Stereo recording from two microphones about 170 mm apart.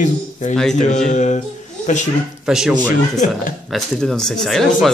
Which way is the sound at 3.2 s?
50° left (ahead or behind).